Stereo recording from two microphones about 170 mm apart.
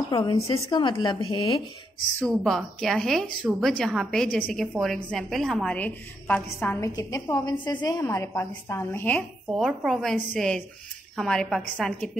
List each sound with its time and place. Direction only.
0.1 s a woman's voice: 25° left (ahead or behind)
2.1 s a woman's voice: 5° left (ahead or behind)
9.5 s speech: 5° right (ahead or behind)